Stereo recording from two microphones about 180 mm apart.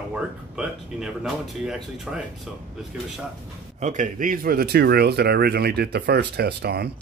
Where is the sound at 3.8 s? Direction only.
45° right (ahead or behind).